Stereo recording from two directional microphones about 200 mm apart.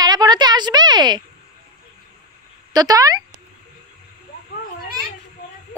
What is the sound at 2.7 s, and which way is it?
Speech, 20° right (ahead or behind).